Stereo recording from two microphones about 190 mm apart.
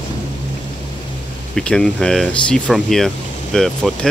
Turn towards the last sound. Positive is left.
turn(degrees=0)  # may be behind; listen again after turning